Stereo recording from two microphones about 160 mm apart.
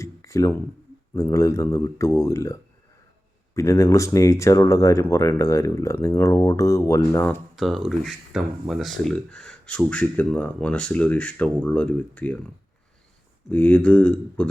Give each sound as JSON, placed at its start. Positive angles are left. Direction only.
{"t": 0.0, "sound": "a sound", "side_deg": 20}
{"t": 1.1, "sound": "speech", "side_deg": 20}
{"t": 7.5, "sound": "speech", "side_deg": 0}
{"t": 13.5, "sound": "speech", "side_deg": 10}